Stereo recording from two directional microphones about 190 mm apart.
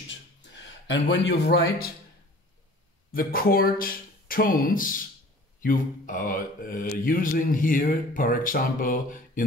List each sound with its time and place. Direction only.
0.6 s a man's voice: 70° left (ahead or behind)
3.1 s speech: 50° left (ahead or behind)